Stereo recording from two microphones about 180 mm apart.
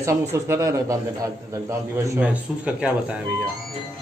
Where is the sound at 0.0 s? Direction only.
15° right (ahead or behind).